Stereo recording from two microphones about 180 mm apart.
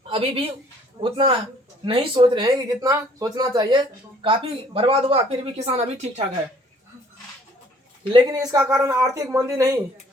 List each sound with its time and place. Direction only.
0.1 s speech: 30° right (ahead or behind)
8.1 s speech: 20° right (ahead or behind)